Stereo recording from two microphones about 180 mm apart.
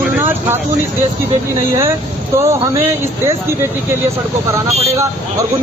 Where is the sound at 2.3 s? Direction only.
15° right (ahead or behind).